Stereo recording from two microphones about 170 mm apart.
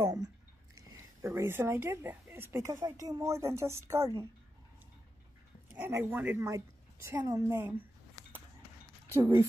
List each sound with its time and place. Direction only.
0.0 s a sound: 20° right (ahead or behind)
0.7 s a woman's voice: 15° right (ahead or behind)
5.8 s a woman's voice: 10° right (ahead or behind)
9.1 s a woman's voice: 15° right (ahead or behind)